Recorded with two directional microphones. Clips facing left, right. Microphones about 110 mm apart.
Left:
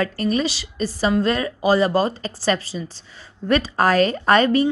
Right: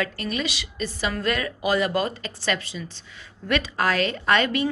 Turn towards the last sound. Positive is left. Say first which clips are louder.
# left 6 dB
turn(degrees=35)  # may be behind; listen again after turning